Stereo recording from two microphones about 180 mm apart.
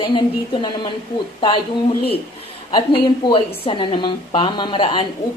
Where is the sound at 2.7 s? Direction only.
30° left (ahead or behind).